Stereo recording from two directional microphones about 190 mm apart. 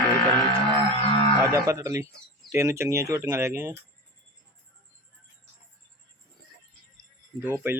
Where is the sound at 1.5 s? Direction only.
15° right (ahead or behind).